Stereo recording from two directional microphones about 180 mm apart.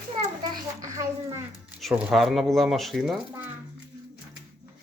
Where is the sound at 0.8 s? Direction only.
20° right (ahead or behind).